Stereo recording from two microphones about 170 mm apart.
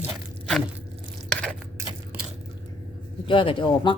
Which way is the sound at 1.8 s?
15° right (ahead or behind).